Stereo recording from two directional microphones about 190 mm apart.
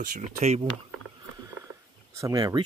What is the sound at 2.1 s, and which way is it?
Speech, 20° right (ahead or behind).